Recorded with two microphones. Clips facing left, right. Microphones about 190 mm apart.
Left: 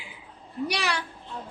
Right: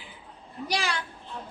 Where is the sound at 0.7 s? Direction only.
70° left (ahead or behind).